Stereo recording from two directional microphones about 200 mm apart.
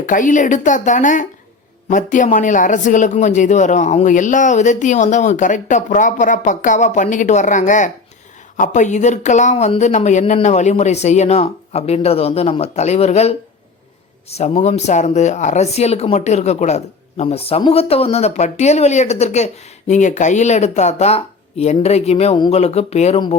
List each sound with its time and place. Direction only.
0.0 s a man's voice: 40° left (ahead or behind)